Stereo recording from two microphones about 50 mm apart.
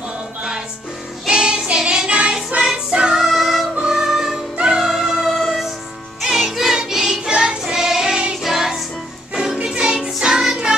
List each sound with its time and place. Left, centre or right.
1.2 s child singing: centre
2.0 s music: right
2.6 s music: centre
7.2 s child singing: centre
8.4 s music: centre